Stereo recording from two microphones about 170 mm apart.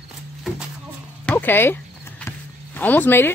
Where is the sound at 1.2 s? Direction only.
10° left (ahead or behind).